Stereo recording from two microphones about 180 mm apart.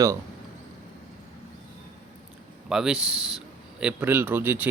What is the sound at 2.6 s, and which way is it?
A man's voice, 5° right (ahead or behind).